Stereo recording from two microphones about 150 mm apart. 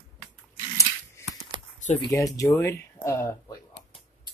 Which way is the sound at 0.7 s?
20° left (ahead or behind).